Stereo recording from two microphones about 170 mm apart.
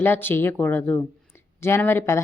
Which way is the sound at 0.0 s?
10° left (ahead or behind).